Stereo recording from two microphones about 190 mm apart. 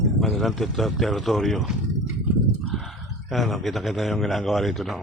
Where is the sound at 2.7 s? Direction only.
Centre (ahead or behind).